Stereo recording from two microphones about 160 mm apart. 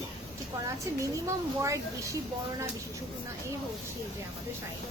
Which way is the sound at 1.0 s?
20° right (ahead or behind).